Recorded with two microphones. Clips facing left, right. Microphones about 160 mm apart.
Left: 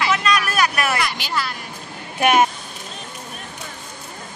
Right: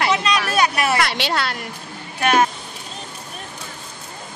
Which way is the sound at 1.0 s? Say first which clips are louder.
Right 3 dB; 75° right (ahead or behind).